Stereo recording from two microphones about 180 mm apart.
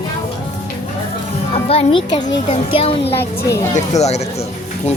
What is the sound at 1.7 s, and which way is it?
A child's voice, 30° left (ahead or behind).